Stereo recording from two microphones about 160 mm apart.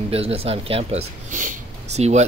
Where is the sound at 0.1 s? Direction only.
35° right (ahead or behind).